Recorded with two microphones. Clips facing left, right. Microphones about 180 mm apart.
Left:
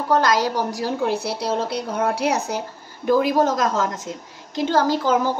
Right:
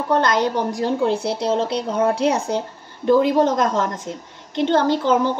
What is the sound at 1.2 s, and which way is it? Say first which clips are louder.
Speech: right 3 dB; 25° right (ahead or behind).